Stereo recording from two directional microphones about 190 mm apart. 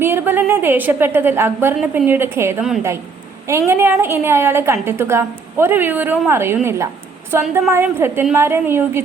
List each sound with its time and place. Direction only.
0.0 s a woman's voice: 10° right (ahead or behind)